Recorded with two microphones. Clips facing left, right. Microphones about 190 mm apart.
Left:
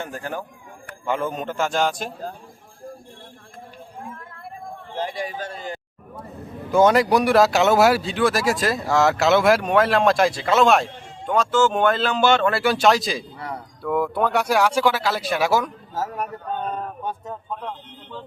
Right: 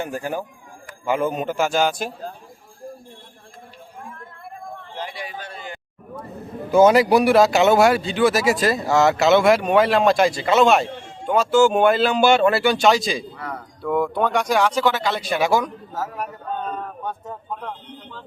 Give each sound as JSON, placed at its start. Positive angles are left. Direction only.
{"t": 0.0, "sound": "speech", "side_deg": -10}
{"t": 4.9, "sound": "a sound", "side_deg": 45}
{"t": 6.7, "sound": "speech", "side_deg": -5}